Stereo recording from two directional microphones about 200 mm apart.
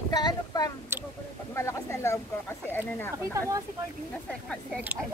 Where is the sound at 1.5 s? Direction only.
15° left (ahead or behind).